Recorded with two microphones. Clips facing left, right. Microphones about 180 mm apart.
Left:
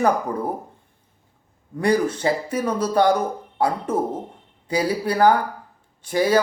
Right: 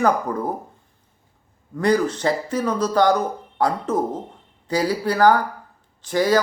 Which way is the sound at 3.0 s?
10° left (ahead or behind).